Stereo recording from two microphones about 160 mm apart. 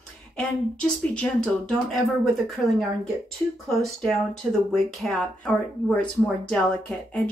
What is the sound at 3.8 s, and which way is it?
Speech, centre (ahead or behind).